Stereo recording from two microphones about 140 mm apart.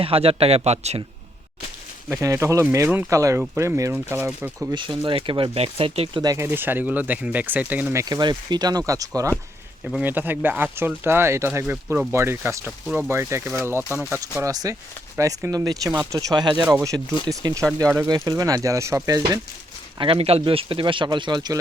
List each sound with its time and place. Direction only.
0.0 s speech: 45° right (ahead or behind)
2.0 s speech: 20° right (ahead or behind)
4.7 s speech: 35° right (ahead or behind)
6.2 s speech: 20° right (ahead or behind)
8.0 s speech: 30° right (ahead or behind)
9.8 s speech: 10° right (ahead or behind); by 19.4 s 25° right (ahead or behind)
20.0 s speech: 45° right (ahead or behind)